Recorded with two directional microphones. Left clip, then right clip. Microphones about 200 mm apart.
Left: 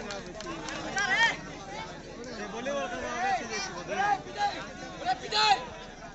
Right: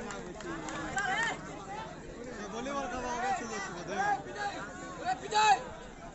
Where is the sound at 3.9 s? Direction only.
50° right (ahead or behind).